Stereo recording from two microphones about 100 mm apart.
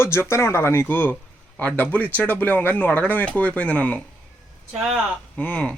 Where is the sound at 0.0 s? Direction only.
25° left (ahead or behind).